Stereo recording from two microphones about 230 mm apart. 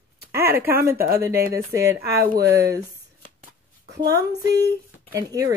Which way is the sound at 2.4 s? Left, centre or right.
Centre.